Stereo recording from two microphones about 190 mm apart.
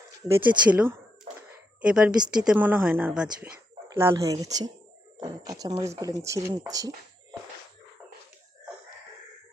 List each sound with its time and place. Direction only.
0.4 s a woman's voice: 10° right (ahead or behind)